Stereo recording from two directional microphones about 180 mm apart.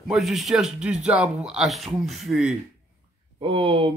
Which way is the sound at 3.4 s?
30° right (ahead or behind).